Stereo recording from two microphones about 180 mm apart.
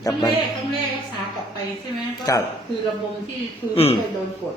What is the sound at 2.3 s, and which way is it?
Speech, 20° left (ahead or behind).